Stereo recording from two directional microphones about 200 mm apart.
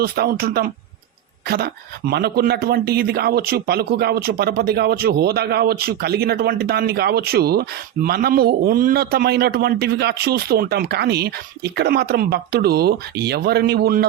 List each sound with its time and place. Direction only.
0.0 s speech: 50° right (ahead or behind)